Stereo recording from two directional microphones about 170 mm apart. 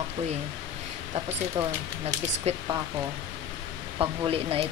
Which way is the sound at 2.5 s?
35° right (ahead or behind).